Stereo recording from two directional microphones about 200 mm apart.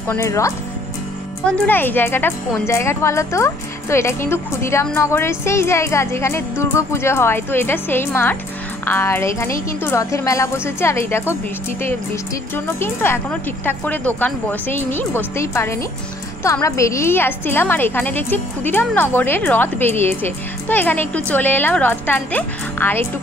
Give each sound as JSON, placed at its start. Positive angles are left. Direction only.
{"t": 0.1, "sound": "speech", "side_deg": 15}
{"t": 12.5, "sound": "speech", "side_deg": 10}